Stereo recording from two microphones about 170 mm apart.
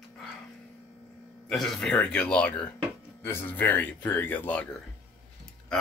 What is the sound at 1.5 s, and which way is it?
Speech, centre (ahead or behind).